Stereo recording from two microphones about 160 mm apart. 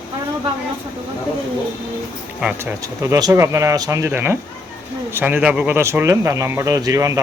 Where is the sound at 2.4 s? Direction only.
10° right (ahead or behind).